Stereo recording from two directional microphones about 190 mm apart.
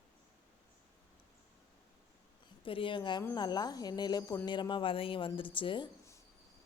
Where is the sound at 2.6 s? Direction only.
25° left (ahead or behind).